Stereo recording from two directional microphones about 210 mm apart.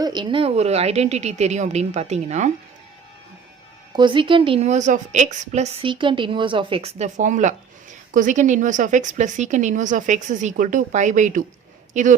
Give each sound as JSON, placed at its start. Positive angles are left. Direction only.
{"t": 0.0, "sound": "a woman's voice", "side_deg": -20}
{"t": 3.9, "sound": "a woman's voice", "side_deg": -20}